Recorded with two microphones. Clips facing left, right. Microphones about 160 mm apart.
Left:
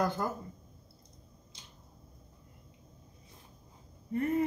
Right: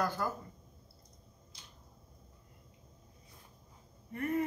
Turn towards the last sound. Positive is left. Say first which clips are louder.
# left 4 dB
turn(degrees=25)  # may be behind; listen again after turning